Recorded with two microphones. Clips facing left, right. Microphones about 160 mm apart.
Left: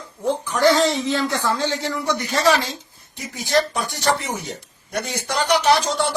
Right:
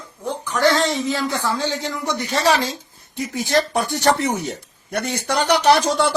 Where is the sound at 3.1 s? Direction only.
50° right (ahead or behind).